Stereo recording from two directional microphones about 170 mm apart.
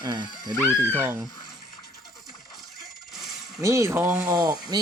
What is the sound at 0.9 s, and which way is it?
Speech, 10° right (ahead or behind).